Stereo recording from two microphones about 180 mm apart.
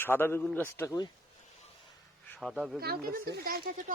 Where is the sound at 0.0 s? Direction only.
10° left (ahead or behind).